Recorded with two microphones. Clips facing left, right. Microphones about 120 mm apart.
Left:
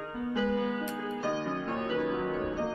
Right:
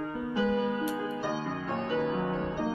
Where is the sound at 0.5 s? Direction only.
15° right (ahead or behind).